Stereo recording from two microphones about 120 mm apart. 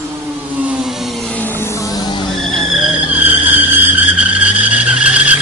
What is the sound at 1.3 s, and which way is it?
Vehicle, 15° left (ahead or behind).